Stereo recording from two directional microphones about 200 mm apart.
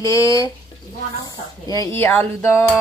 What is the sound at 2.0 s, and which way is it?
Speech, 10° left (ahead or behind).